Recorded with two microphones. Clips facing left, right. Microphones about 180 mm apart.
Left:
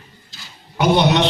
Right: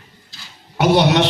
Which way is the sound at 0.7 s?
75° right (ahead or behind).